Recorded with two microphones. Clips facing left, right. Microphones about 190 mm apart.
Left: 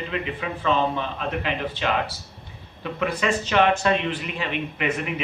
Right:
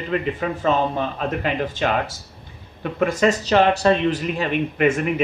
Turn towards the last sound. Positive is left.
turn(degrees=-50)  # may be behind; listen again after turning